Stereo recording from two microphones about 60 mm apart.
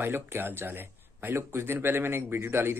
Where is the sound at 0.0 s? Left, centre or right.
Right.